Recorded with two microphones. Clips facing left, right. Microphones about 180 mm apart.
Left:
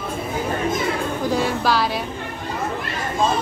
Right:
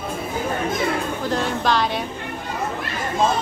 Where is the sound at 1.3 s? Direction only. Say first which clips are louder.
Even; 5° left (ahead or behind).